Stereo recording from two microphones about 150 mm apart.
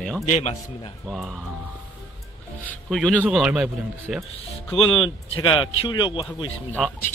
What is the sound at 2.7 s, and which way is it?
Speech, 5° left (ahead or behind).